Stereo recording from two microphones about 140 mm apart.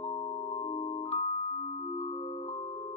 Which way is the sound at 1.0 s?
50° left (ahead or behind).